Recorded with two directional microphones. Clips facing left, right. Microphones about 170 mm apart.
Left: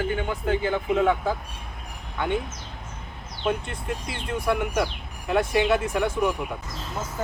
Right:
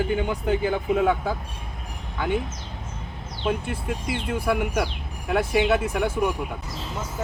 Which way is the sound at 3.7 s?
5° right (ahead or behind).